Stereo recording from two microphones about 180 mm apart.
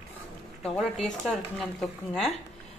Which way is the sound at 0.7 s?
5° left (ahead or behind).